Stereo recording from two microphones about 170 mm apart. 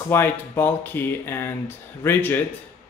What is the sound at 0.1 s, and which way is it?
Speech, 10° left (ahead or behind).